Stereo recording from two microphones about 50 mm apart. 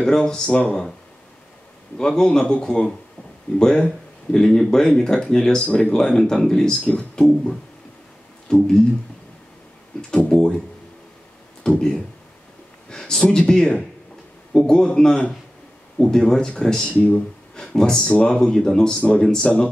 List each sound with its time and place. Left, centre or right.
0.0 s speech: centre
2.0 s speech: centre
6.8 s speech: left
7.2 s speech: centre
10.1 s speech: centre
11.6 s speech: centre
12.9 s speech: centre